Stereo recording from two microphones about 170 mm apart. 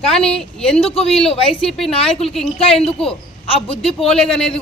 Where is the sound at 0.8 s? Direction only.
35° left (ahead or behind).